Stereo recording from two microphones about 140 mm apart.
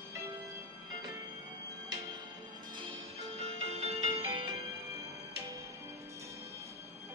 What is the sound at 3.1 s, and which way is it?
Music, 50° right (ahead or behind).